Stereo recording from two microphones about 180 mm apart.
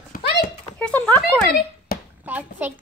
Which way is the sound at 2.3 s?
10° right (ahead or behind).